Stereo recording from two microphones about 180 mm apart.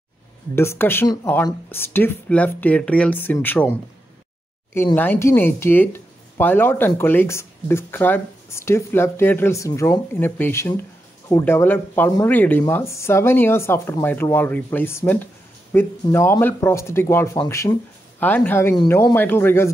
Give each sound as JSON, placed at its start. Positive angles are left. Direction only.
{"t": 0.6, "sound": "speech", "side_deg": 15}
{"t": 4.9, "sound": "speech", "side_deg": 10}